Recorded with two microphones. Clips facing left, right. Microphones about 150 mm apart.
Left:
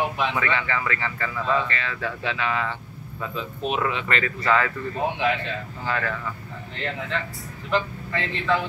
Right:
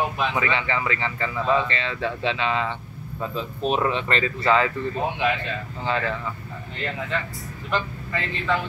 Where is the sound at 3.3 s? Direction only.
35° right (ahead or behind).